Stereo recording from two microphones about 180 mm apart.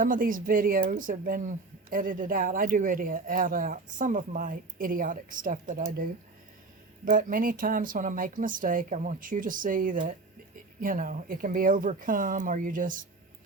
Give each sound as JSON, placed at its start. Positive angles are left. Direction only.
{"t": 0.0, "sound": "speech", "side_deg": -50}